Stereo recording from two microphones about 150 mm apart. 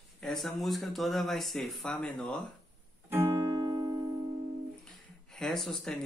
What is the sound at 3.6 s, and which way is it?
Music, 25° right (ahead or behind).